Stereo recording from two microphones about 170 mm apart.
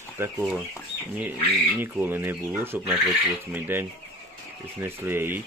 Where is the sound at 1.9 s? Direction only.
10° right (ahead or behind).